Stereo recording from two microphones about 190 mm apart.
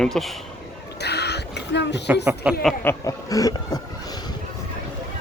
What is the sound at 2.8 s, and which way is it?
Speech, 15° left (ahead or behind).